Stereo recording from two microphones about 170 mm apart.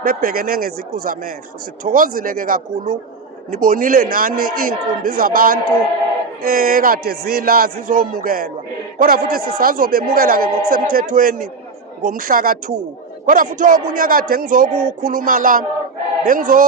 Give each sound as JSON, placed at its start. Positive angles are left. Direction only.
{"t": 0.0, "sound": "a man's voice", "side_deg": -55}